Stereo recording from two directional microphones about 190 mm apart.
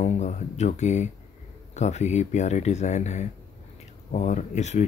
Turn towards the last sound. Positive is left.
turn(degrees=35)  # may be behind; listen again after turning